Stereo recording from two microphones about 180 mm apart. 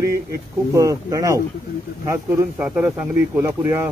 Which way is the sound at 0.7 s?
20° right (ahead or behind).